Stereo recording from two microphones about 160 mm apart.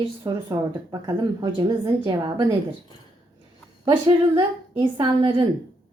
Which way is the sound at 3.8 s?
30° right (ahead or behind).